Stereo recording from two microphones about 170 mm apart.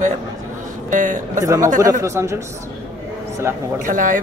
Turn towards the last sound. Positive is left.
turn(degrees=-50)  # may be behind; listen again after turning